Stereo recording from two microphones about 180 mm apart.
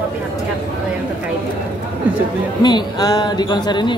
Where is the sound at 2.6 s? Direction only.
20° left (ahead or behind).